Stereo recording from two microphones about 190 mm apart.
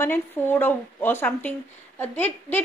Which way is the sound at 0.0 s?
10° left (ahead or behind).